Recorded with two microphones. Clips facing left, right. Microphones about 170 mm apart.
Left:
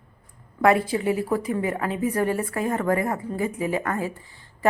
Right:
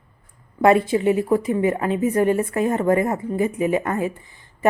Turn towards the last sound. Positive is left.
turn(degrees=-20)  # may be behind; listen again after turning